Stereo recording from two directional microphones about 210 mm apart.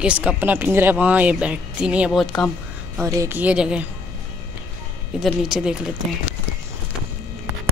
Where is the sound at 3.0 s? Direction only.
10° right (ahead or behind).